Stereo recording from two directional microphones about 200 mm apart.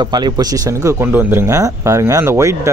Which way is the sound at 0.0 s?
20° right (ahead or behind).